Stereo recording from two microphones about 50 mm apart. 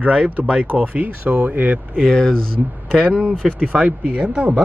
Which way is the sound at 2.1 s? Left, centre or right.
Centre.